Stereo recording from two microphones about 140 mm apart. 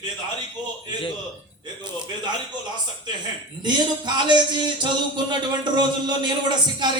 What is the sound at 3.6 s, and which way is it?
Speech, 30° right (ahead or behind).